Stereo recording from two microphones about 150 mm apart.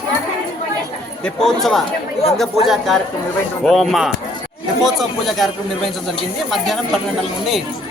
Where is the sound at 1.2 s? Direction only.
5° left (ahead or behind).